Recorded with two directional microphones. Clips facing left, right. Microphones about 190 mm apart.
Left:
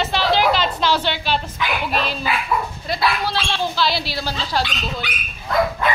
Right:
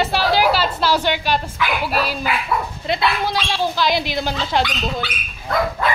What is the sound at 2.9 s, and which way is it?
Speech, 20° right (ahead or behind).